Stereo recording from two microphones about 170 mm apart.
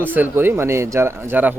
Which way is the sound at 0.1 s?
10° right (ahead or behind).